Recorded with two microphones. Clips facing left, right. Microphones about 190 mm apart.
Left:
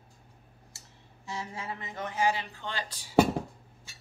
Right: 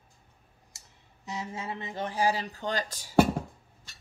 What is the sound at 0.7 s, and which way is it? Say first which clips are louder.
Speech: left 4 dB; 20° right (ahead or behind).